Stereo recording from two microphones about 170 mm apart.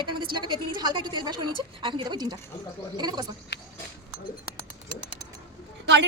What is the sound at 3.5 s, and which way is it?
Goat, 90° left.